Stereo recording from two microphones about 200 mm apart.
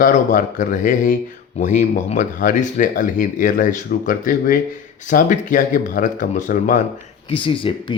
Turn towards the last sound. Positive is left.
turn(degrees=25)  # may be behind; listen again after turning